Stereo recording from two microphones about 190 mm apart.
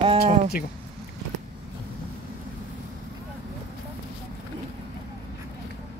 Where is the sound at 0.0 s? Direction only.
30° right (ahead or behind).